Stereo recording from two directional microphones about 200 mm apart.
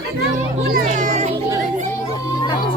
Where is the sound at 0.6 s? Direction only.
45° right (ahead or behind).